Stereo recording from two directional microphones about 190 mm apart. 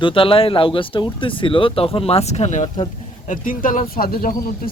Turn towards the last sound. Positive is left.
turn(degrees=50)  # may be behind; listen again after turning